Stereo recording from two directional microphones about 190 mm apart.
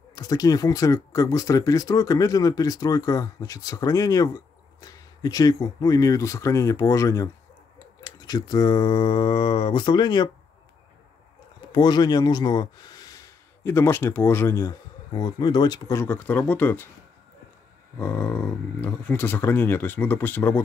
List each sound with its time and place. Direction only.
0.1 s speech: 20° left (ahead or behind)
11.7 s speech: 20° left (ahead or behind)
17.9 s speech: 10° left (ahead or behind)